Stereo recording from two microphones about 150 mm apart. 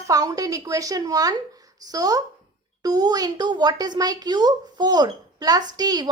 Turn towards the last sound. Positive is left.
turn(degrees=-25)  # may be behind; listen again after turning